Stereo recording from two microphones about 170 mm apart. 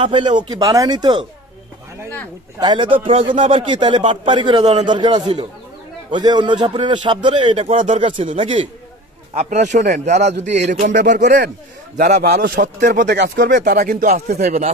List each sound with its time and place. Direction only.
0.0 s a man's voice: 25° right (ahead or behind)
2.6 s a man's voice: 30° right (ahead or behind)
7.7 s a man's voice: 50° right (ahead or behind)
8.0 s a man's voice: 40° right (ahead or behind)
11.2 s speech: 75° right (ahead or behind)
12.1 s a man's voice: 60° right (ahead or behind)
13.1 s speech: 75° right (ahead or behind)
13.7 s a man's voice: 50° right (ahead or behind)